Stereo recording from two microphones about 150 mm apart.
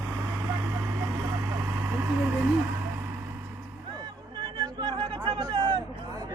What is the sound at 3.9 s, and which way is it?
Chatter, 30° right (ahead or behind).